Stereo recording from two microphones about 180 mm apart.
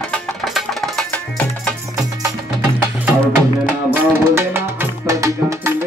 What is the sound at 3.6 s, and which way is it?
Music, 10° right (ahead or behind).